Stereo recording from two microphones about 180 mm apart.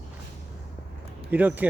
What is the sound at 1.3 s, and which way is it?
Speech, 10° right (ahead or behind).